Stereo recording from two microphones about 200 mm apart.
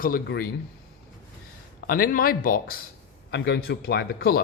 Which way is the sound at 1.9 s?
45° left (ahead or behind).